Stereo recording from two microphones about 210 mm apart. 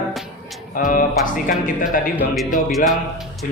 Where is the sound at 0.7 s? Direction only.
40° left (ahead or behind).